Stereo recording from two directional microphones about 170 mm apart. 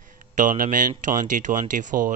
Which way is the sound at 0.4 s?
50° right (ahead or behind).